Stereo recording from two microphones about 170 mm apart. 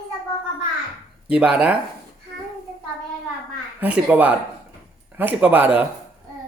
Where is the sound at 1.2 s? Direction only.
5° right (ahead or behind).